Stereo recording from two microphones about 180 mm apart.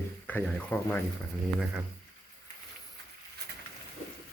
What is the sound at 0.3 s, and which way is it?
Speech, 10° left (ahead or behind).